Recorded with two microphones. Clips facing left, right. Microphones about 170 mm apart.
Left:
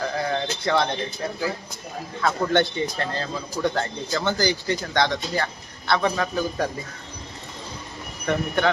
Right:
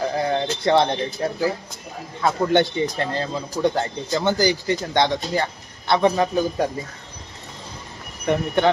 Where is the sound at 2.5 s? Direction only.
20° right (ahead or behind).